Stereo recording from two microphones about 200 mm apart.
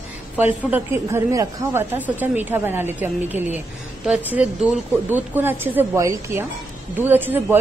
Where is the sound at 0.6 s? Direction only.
10° right (ahead or behind).